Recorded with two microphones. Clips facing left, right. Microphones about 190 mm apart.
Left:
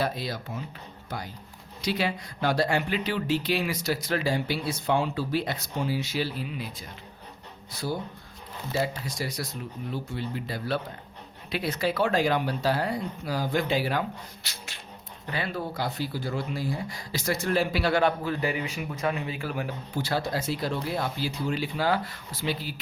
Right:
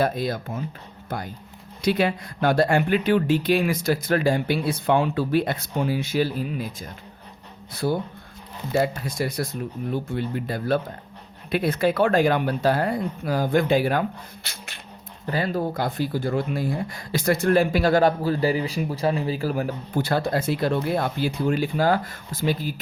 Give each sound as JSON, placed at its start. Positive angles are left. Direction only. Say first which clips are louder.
{"t": 0.0, "sound": "speech", "louder": "right 6 dB", "side_deg": -50}
{"t": 7.7, "sound": "speech", "louder": "right 7 dB", "side_deg": -55}
{"t": 9.0, "sound": "speech", "louder": "right 6 dB", "side_deg": -55}
{"t": 15.3, "sound": "speech", "louder": "right 7 dB", "side_deg": -40}